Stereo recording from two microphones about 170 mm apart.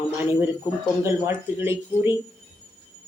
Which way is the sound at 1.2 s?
15° right (ahead or behind).